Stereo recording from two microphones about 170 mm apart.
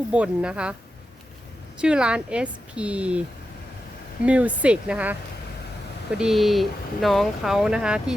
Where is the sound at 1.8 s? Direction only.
5° right (ahead or behind).